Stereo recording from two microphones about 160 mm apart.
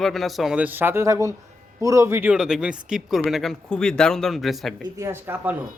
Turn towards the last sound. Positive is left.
turn(degrees=-15)  # may be behind; listen again after turning